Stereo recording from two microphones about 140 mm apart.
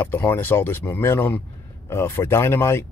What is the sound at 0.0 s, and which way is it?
Speech, 15° left (ahead or behind).